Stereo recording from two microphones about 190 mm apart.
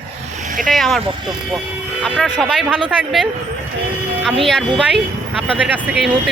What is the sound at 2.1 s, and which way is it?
Speech, centre (ahead or behind).